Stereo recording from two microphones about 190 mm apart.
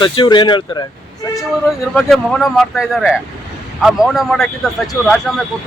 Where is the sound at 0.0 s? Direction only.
25° left (ahead or behind).